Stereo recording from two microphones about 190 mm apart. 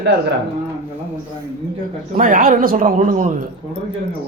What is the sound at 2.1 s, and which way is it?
Speech, 45° right (ahead or behind).